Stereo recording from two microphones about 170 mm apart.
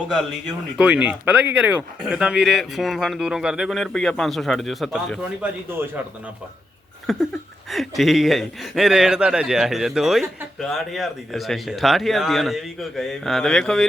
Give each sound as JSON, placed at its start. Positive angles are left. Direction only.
{"t": 0.8, "sound": "a man's voice", "side_deg": -5}
{"t": 7.1, "sound": "a man's voice", "side_deg": 0}